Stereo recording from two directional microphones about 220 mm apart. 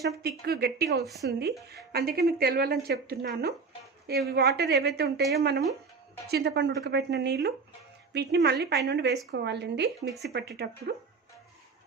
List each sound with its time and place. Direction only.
0.2 s a woman's voice: 45° right (ahead or behind)